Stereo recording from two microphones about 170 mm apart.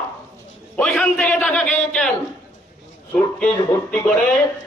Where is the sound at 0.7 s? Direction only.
5° left (ahead or behind).